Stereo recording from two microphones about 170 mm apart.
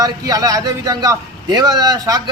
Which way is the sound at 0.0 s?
20° right (ahead or behind).